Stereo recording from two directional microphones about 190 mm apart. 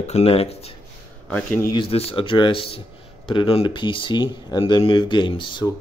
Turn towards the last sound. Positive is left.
turn(degrees=25)  # may be behind; listen again after turning